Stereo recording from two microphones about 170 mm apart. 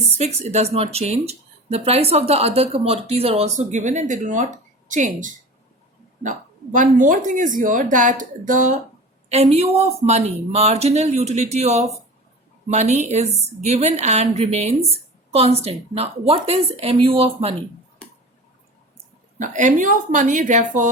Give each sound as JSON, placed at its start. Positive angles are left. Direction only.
{"t": 0.2, "sound": "speech", "side_deg": -40}
{"t": 6.7, "sound": "a woman's voice", "side_deg": -50}
{"t": 9.3, "sound": "speech", "side_deg": -40}
{"t": 19.4, "sound": "a woman's voice", "side_deg": -50}